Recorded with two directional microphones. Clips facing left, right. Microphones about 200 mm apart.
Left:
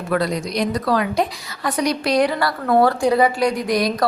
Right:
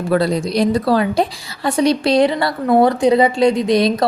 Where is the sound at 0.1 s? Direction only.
30° right (ahead or behind).